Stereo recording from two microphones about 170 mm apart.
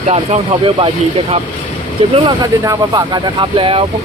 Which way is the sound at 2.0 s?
30° right (ahead or behind).